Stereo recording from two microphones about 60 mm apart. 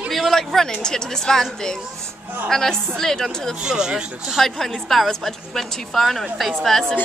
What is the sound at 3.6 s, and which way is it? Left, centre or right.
Speech, centre.